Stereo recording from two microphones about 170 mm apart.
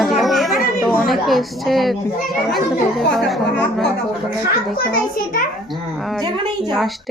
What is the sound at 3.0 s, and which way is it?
Speech, 5° left (ahead or behind).